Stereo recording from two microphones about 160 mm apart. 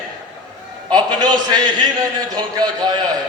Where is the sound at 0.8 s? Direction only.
25° right (ahead or behind).